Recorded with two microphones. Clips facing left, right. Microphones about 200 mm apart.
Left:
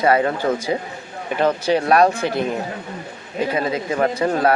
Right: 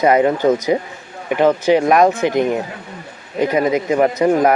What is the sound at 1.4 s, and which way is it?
Speech, 15° right (ahead or behind).